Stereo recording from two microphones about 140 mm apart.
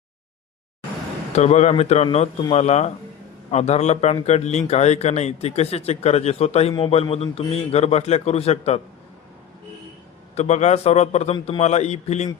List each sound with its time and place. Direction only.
1.3 s a man's voice: 55° left (ahead or behind)
10.3 s a man's voice: 55° left (ahead or behind)